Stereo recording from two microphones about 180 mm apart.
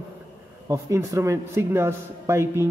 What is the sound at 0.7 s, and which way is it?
Speech, 15° right (ahead or behind).